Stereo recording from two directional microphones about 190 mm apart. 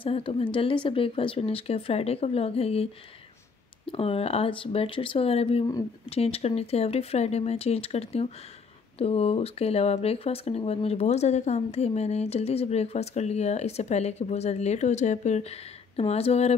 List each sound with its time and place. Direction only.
0.0 s speech: 30° left (ahead or behind)